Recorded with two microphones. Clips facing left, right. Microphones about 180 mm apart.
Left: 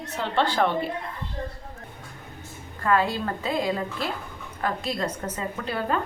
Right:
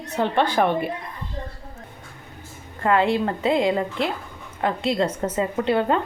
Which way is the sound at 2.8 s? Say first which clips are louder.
Right 4 dB; 20° right (ahead or behind).